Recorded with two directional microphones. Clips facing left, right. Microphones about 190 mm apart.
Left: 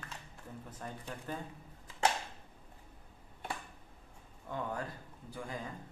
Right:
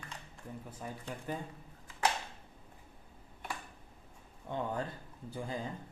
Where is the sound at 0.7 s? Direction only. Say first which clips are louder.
Right 1 dB; 10° right (ahead or behind).